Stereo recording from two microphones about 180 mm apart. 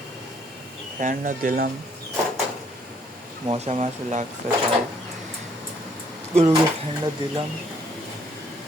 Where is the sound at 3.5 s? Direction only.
35° right (ahead or behind).